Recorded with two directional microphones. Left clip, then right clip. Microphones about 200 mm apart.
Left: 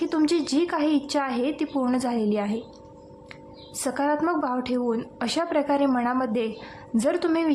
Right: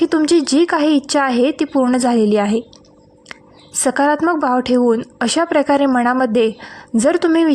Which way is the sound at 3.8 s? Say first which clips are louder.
Right 10 dB; 40° right (ahead or behind).